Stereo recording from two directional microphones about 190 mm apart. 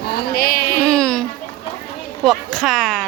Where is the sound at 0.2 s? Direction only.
50° left (ahead or behind).